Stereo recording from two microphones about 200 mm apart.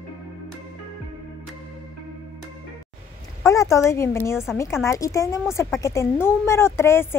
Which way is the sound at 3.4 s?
15° left (ahead or behind).